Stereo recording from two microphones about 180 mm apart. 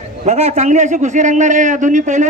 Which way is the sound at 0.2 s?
40° right (ahead or behind).